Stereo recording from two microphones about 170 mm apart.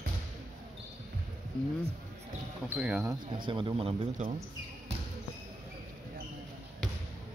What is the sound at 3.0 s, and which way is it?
Speech, 25° right (ahead or behind).